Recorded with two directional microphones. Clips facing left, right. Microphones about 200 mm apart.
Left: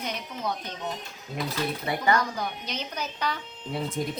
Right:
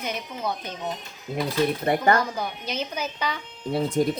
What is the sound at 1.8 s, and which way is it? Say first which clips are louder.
Speech: right 3 dB; 50° right (ahead or behind).